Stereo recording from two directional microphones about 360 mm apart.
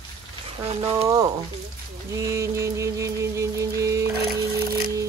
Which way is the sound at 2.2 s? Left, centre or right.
Centre.